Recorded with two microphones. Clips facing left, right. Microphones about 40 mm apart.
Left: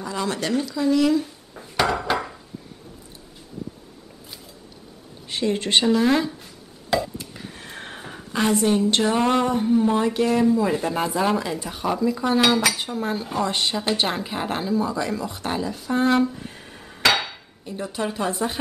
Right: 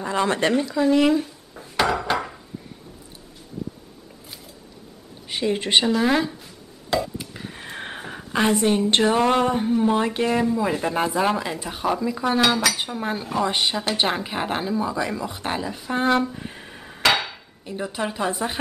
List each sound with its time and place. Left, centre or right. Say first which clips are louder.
0.0 s speech: right 5 dB; right
1.5 s dishes: even; centre
5.3 s speech: right 1 dB; centre
6.9 s a sound: left 1 dB; centre; by 8.0 s right
8.0 s a woman's voice: right 1 dB; centre
9.1 s speech: right 1 dB; centre
10.4 s speech: left 2 dB; centre
12.4 s speech: left 1 dB; centre
12.7 s speech: left 1 dB; centre
16.3 s hammer: right 2 dB; centre
17.6 s speech: even; centre